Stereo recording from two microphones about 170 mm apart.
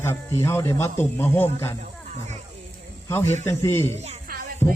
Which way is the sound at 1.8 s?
45° right (ahead or behind).